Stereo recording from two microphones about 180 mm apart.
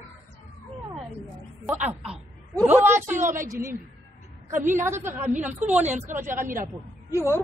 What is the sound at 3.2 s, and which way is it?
Speech, 45° right (ahead or behind).